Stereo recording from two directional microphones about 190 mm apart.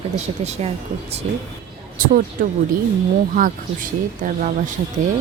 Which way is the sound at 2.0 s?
45° right (ahead or behind).